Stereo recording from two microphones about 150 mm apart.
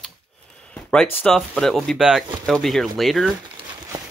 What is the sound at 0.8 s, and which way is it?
Speech, 5° left (ahead or behind).